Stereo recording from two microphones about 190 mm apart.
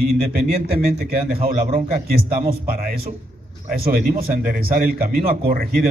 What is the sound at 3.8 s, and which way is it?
A man's voice, 45° right (ahead or behind).